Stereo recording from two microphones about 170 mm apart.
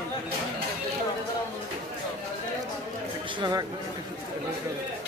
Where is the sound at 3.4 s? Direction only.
25° right (ahead or behind).